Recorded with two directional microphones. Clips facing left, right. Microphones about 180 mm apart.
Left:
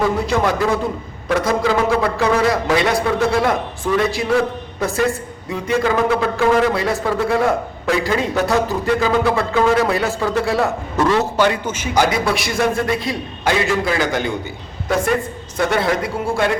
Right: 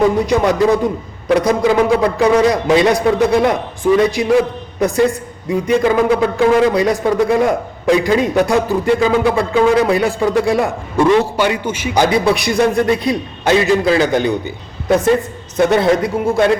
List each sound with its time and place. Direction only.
0.0 s a man's voice: 15° right (ahead or behind)
12.1 s a man's voice: 20° right (ahead or behind)